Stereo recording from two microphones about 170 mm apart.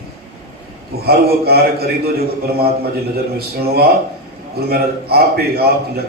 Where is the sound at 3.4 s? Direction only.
65° right (ahead or behind).